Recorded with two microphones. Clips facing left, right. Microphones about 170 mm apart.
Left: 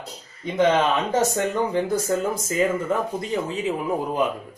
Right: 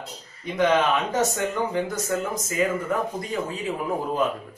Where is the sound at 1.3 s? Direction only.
30° left (ahead or behind).